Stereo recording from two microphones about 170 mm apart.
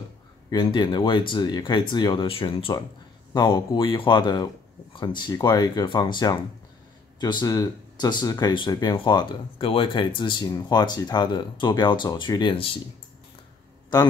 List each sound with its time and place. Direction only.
0.5 s speech: 25° left (ahead or behind)